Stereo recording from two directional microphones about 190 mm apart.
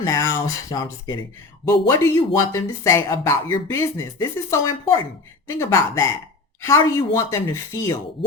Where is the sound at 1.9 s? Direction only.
15° left (ahead or behind).